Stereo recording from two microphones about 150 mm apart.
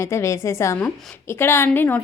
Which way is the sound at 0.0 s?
20° left (ahead or behind).